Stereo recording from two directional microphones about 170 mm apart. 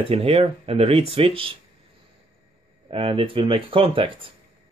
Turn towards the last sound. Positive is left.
turn(degrees=-30)  # may be behind; listen again after turning